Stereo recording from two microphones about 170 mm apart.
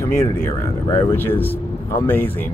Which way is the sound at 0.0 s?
15° left (ahead or behind).